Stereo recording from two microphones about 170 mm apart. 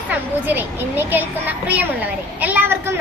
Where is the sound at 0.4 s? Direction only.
10° right (ahead or behind).